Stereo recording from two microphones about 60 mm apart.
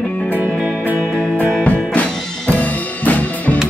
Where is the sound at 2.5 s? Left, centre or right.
Left.